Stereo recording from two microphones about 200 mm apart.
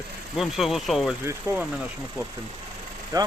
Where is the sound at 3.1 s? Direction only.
15° right (ahead or behind).